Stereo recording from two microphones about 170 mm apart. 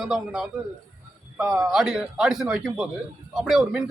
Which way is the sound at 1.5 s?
20° right (ahead or behind).